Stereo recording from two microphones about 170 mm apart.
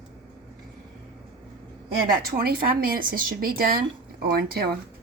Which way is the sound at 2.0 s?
60° right (ahead or behind).